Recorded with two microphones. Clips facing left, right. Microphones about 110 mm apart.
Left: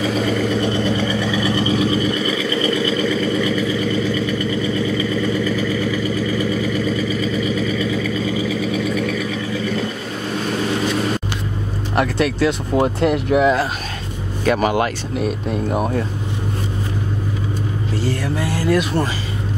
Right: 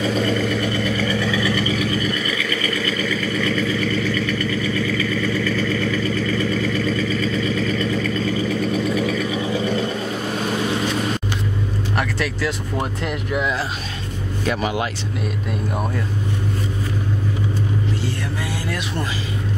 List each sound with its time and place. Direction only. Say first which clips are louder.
0.0 s vehicle: left 1 dB; 5° left (ahead or behind)
0.6 s vehicle: left 3 dB; 25° left (ahead or behind); by 9.3 s centre (ahead or behind)
9.5 s vehicle: right 1 dB; 30° right (ahead or behind)
11.9 s a sound: left 7 dB; 30° left (ahead or behind)
12.8 s speech: left 8 dB; 40° left (ahead or behind)
18.6 s speech: left 8 dB; 40° left (ahead or behind)